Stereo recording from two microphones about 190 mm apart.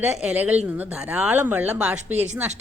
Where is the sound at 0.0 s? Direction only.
10° right (ahead or behind).